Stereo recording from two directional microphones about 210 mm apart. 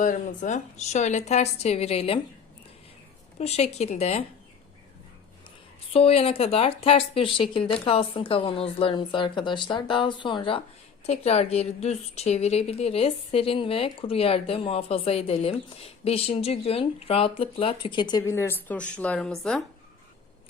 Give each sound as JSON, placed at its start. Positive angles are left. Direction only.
{"t": 0.0, "sound": "speech", "side_deg": 40}
{"t": 3.3, "sound": "speech", "side_deg": 30}
{"t": 5.9, "sound": "a woman's voice", "side_deg": 30}